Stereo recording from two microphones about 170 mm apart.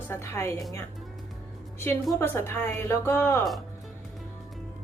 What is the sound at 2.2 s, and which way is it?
A woman's voice, 15° left (ahead or behind).